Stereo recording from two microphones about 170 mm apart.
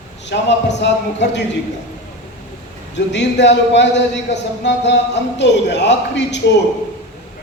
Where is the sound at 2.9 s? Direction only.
90° left.